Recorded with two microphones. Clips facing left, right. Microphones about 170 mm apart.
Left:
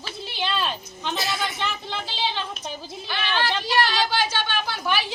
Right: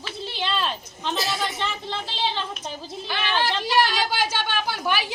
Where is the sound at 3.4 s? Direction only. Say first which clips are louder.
Right 1 dB; 15° right (ahead or behind).